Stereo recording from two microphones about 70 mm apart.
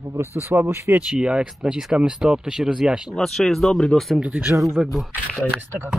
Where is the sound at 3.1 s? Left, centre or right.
Centre.